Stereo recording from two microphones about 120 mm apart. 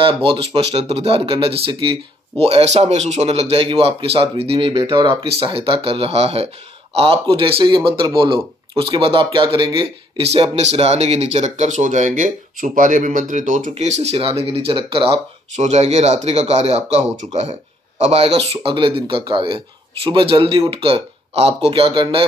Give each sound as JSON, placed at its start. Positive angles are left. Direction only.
{"t": 0.0, "sound": "speech", "side_deg": -50}
{"t": 2.4, "sound": "speech", "side_deg": -60}
{"t": 10.1, "sound": "speech", "side_deg": -55}
{"t": 14.1, "sound": "speech", "side_deg": -50}
{"t": 15.5, "sound": "speech", "side_deg": -70}